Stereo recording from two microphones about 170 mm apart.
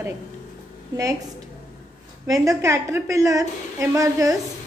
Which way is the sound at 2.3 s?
20° right (ahead or behind).